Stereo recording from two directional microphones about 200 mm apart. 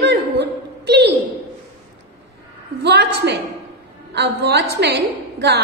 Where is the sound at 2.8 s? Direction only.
60° right (ahead or behind).